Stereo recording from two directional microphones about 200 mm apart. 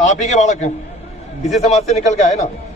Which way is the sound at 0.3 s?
35° left (ahead or behind).